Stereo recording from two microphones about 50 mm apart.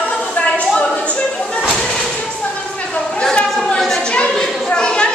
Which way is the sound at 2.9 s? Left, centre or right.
Centre.